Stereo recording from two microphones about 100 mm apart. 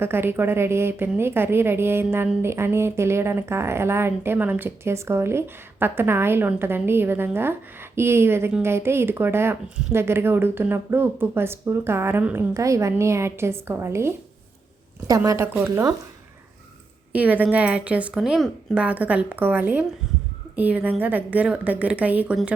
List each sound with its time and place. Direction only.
0.0 s a woman's voice: 20° right (ahead or behind)
12.5 s a woman's voice: 30° right (ahead or behind)
15.0 s a woman's voice: 35° right (ahead or behind)
17.1 s a woman's voice: 15° right (ahead or behind)